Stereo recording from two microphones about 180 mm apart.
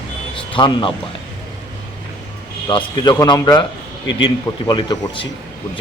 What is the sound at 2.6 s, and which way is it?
A man's voice, 25° left (ahead or behind).